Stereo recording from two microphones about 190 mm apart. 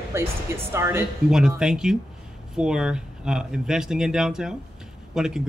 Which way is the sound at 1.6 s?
5° right (ahead or behind).